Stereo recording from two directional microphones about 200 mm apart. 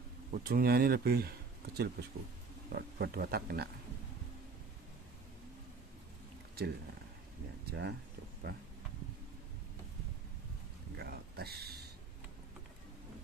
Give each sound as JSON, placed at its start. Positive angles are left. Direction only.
{"t": 0.3, "sound": "speech", "side_deg": -50}
{"t": 6.6, "sound": "speech", "side_deg": -50}
{"t": 11.0, "sound": "a sound", "side_deg": -50}